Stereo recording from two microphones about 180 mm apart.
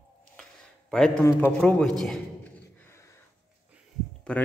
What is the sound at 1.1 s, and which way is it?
A man's voice, 15° left (ahead or behind).